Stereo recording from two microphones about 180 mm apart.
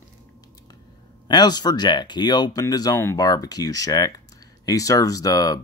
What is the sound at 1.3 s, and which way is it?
Speech, 25° left (ahead or behind).